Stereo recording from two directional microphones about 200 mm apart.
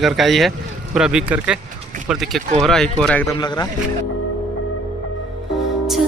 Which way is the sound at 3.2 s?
20° left (ahead or behind).